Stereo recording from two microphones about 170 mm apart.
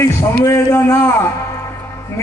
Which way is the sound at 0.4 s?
15° left (ahead or behind).